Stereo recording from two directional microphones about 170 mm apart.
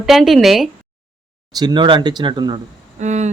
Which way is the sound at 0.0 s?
Centre (ahead or behind).